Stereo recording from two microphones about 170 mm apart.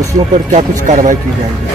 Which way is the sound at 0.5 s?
45° right (ahead or behind).